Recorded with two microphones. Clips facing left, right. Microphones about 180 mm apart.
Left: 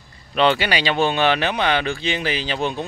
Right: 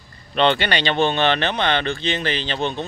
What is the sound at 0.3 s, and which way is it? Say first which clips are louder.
Speech: even; 5° left (ahead or behind).